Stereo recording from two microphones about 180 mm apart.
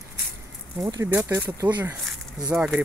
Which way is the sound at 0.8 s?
20° right (ahead or behind).